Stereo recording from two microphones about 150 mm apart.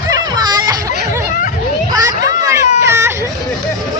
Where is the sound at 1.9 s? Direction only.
25° right (ahead or behind).